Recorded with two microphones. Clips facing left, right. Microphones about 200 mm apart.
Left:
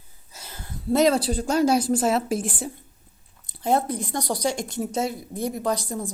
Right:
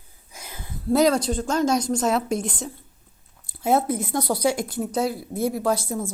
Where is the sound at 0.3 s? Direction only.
10° right (ahead or behind).